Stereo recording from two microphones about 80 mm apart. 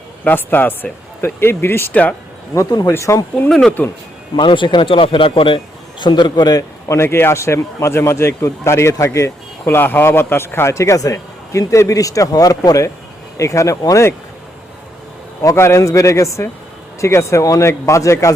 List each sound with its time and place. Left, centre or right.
0.3 s speech: left
1.9 s speech: centre
2.6 s a man's voice: left
3.8 s speech: left
4.4 s a man's voice: left
9.7 s a man's voice: left
15.4 s a man's voice: left